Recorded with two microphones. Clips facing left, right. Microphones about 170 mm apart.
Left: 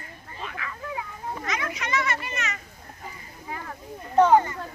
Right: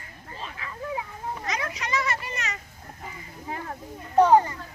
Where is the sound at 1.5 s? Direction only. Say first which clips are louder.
Left 1 dB; 35° right (ahead or behind).